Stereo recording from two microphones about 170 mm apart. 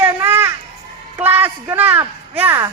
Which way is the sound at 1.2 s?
10° right (ahead or behind).